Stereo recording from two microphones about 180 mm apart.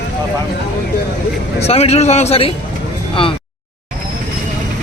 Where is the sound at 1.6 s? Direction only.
35° left (ahead or behind).